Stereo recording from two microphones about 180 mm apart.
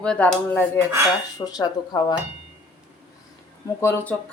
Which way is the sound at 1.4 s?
20° left (ahead or behind).